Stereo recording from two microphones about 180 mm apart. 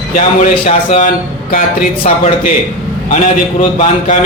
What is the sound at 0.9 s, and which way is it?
Speech, 45° left (ahead or behind).